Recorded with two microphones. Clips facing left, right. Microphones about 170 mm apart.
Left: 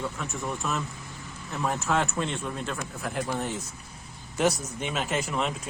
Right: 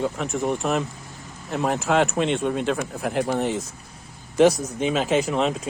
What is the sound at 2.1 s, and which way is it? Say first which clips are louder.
Speech: right 9 dB; 85° right.